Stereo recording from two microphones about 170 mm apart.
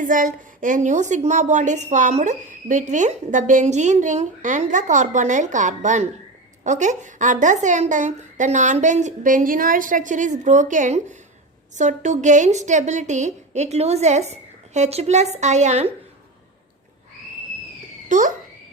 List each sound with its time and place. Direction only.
0.0 s a woman's voice: 50° right (ahead or behind)
18.1 s a woman's voice: 50° right (ahead or behind)